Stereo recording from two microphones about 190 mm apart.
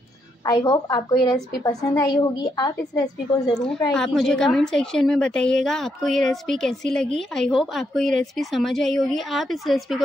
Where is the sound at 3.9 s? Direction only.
Centre (ahead or behind).